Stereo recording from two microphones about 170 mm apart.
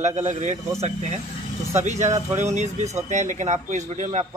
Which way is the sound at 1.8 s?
45° right (ahead or behind).